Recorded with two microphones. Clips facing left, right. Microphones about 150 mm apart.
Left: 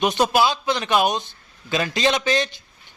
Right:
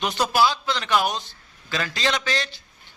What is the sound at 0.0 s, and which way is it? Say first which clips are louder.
A man's voice: left 3 dB; 20° left (ahead or behind).